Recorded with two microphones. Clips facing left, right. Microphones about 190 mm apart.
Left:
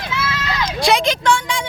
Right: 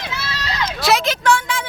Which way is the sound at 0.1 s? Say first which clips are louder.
Left 8 dB; 35° right (ahead or behind).